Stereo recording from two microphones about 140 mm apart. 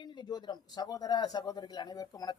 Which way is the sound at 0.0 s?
30° left (ahead or behind).